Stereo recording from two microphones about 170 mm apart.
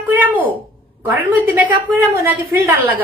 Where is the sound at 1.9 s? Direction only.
10° right (ahead or behind).